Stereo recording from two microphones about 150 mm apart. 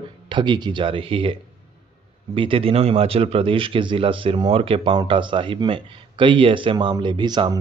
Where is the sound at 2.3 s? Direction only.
35° right (ahead or behind).